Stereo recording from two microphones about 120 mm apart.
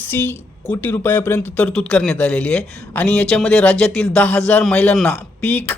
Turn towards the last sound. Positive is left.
turn(degrees=15)  # may be behind; listen again after turning